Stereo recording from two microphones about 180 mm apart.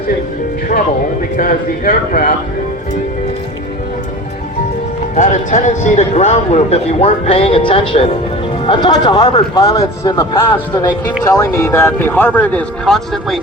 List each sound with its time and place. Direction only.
1.4 s speech: 50° left (ahead or behind)
5.1 s a man's voice: 45° left (ahead or behind); by 13.4 s centre (ahead or behind)